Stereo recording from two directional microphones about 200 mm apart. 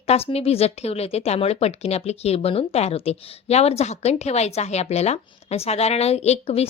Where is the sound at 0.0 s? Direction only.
30° left (ahead or behind).